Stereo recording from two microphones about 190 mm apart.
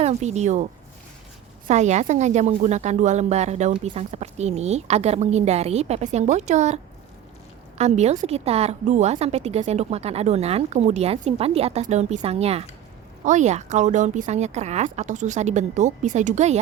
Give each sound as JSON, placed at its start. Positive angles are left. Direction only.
{"t": 0.0, "sound": "a woman's voice", "side_deg": -35}
{"t": 7.8, "sound": "a woman's voice", "side_deg": -35}